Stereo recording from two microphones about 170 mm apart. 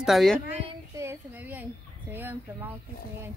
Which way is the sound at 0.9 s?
15° right (ahead or behind).